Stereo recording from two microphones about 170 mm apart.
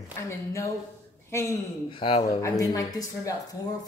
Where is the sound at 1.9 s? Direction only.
30° left (ahead or behind).